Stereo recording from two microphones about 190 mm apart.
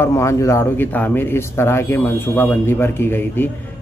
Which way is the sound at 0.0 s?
15° left (ahead or behind).